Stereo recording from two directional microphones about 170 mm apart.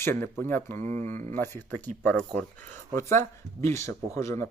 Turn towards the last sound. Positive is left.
turn(degrees=15)  # may be behind; listen again after turning